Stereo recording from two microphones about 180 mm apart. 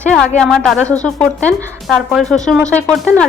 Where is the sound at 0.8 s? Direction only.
20° right (ahead or behind).